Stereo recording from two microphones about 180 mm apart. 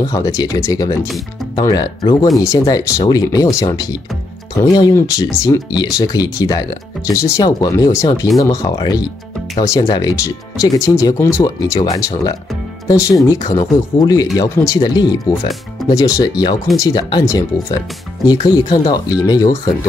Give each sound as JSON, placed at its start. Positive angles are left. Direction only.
{"t": 0.0, "sound": "speech", "side_deg": 20}